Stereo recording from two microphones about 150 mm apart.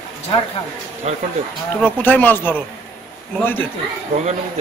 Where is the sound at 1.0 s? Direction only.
50° right (ahead or behind).